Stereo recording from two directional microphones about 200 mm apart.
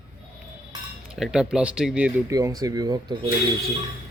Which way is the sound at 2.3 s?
15° right (ahead or behind).